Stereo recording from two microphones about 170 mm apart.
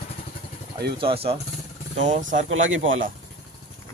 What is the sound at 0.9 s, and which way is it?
Speech, 35° right (ahead or behind).